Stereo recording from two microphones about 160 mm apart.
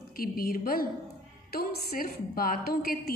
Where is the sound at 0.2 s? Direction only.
65° left (ahead or behind).